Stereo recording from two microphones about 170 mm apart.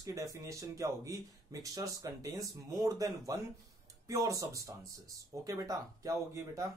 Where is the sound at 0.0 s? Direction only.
20° right (ahead or behind).